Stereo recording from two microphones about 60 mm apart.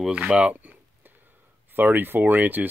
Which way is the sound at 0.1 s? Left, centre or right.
Centre.